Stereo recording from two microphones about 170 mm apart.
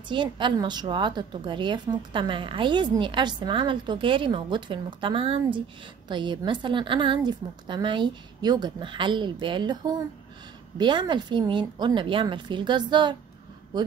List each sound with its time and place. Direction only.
0.1 s a woman's voice: 30° right (ahead or behind)